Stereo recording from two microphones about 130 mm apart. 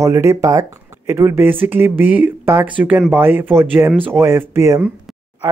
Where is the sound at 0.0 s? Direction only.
20° right (ahead or behind).